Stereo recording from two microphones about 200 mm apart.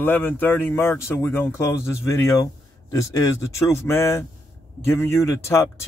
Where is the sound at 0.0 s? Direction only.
10° left (ahead or behind).